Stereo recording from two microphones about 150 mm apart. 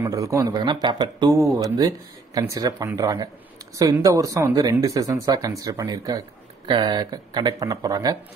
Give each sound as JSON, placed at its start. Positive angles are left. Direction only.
{"t": 0.0, "sound": "speech", "side_deg": -20}